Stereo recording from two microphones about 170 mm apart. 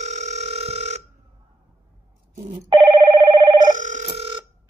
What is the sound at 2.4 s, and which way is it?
Telephone bell ringing, 40° right (ahead or behind).